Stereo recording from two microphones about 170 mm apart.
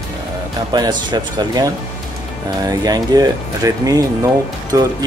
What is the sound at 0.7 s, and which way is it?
Speech, 25° right (ahead or behind).